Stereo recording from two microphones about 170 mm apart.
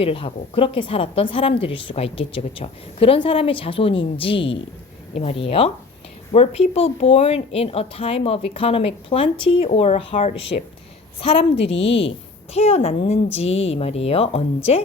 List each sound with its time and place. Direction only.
0.0 s speech: 35° left (ahead or behind)
11.7 s a woman's voice: 90° left
12.5 s speech: 35° left (ahead or behind)